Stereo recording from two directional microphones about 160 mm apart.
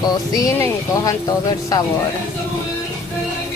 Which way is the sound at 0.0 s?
25° left (ahead or behind).